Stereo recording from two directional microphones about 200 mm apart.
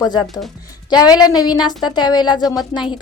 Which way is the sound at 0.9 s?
20° left (ahead or behind).